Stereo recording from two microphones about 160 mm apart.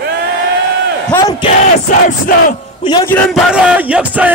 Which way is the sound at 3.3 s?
5° right (ahead or behind).